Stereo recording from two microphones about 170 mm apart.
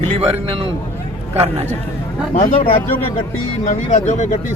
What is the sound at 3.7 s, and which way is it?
Speech, 45° left (ahead or behind).